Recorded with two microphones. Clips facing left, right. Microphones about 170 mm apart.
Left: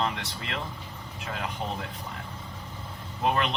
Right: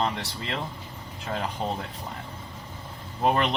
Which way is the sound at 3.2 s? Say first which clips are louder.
Right 3 dB; 30° right (ahead or behind).